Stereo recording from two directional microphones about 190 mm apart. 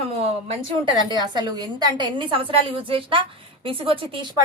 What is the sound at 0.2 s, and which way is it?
Speech, 35° right (ahead or behind).